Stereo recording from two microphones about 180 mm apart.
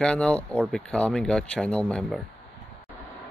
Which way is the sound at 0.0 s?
5° left (ahead or behind).